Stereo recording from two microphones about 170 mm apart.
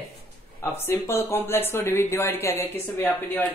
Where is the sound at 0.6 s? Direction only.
15° left (ahead or behind).